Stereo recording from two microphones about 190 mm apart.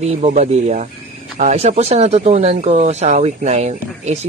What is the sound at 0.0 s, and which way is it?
Speech, 35° right (ahead or behind).